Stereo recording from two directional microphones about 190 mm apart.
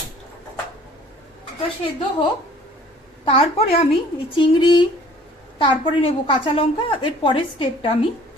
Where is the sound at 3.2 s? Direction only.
30° left (ahead or behind).